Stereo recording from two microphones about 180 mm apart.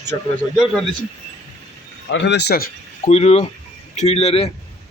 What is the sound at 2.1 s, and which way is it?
Speech, 75° left (ahead or behind).